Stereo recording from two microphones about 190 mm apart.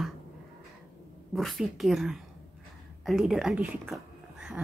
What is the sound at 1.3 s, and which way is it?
A woman's voice, centre (ahead or behind).